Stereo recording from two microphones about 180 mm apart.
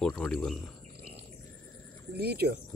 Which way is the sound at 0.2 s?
Centre (ahead or behind).